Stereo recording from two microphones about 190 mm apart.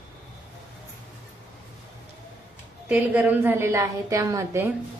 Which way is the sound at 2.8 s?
10° right (ahead or behind).